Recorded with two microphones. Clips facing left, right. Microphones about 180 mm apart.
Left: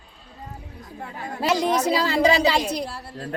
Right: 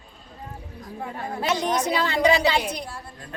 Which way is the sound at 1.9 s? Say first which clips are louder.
Even; 35° left (ahead or behind).